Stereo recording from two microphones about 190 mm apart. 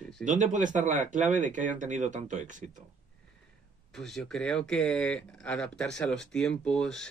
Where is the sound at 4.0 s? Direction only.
Centre (ahead or behind).